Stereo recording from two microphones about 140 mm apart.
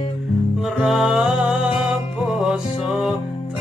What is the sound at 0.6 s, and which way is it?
Music, centre (ahead or behind).